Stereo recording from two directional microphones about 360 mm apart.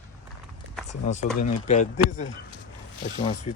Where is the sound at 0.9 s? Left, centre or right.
Centre.